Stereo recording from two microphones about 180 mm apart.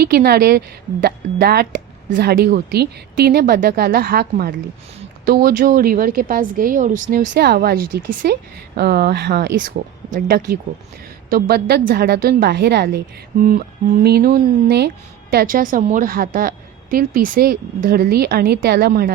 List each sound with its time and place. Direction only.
0.0 s a woman's voice: 60° right (ahead or behind)
13.4 s a woman's voice: 50° right (ahead or behind)